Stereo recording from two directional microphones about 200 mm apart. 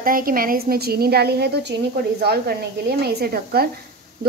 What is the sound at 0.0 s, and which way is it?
A woman's voice, 45° right (ahead or behind).